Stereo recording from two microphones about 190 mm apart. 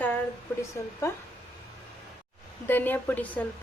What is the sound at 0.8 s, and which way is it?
Speech, 15° left (ahead or behind).